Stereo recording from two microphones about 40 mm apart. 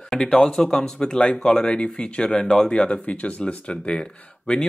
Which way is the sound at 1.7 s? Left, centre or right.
Left.